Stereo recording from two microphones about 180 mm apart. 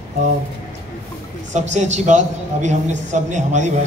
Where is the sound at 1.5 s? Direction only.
40° right (ahead or behind).